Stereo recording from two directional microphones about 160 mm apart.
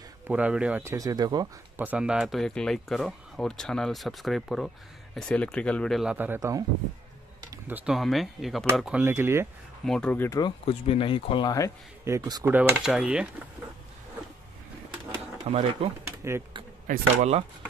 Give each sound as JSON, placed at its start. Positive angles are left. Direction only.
{"t": 0.3, "sound": "speech", "side_deg": -5}
{"t": 0.9, "sound": "speech", "side_deg": -25}
{"t": 1.8, "sound": "speech", "side_deg": -10}
{"t": 6.1, "sound": "speech", "side_deg": -10}
{"t": 9.8, "sound": "speech", "side_deg": 5}
{"t": 10.4, "sound": "speech", "side_deg": 35}
{"t": 12.0, "sound": "speech", "side_deg": -20}
{"t": 12.4, "sound": "speech", "side_deg": -5}
{"t": 15.4, "sound": "speech", "side_deg": -40}
{"t": 16.1, "sound": "bee", "side_deg": -15}
{"t": 16.8, "sound": "speech", "side_deg": -50}